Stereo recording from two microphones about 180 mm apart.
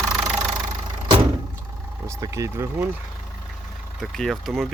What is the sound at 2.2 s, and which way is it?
Speech, 20° right (ahead or behind).